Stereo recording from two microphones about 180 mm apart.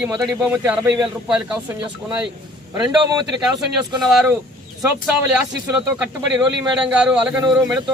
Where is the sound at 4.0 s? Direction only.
Centre (ahead or behind).